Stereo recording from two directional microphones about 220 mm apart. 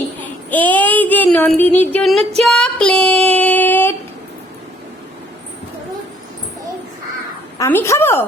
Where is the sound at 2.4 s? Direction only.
5° left (ahead or behind).